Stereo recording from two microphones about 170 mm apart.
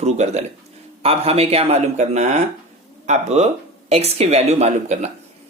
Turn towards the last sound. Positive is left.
turn(degrees=-40)  # may be behind; listen again after turning